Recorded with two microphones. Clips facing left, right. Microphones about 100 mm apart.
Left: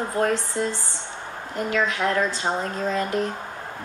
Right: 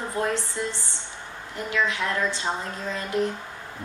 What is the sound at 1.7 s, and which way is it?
Speech, 45° left (ahead or behind).